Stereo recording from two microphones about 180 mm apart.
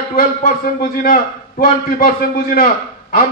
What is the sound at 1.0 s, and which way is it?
A man's voice, 50° left (ahead or behind).